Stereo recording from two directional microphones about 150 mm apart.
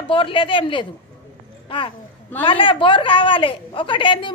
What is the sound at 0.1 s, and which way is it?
Speech, 35° left (ahead or behind).